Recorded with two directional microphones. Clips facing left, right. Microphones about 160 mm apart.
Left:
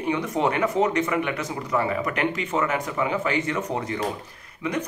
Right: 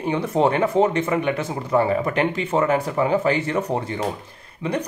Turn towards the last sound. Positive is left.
turn(degrees=-30)  # may be behind; listen again after turning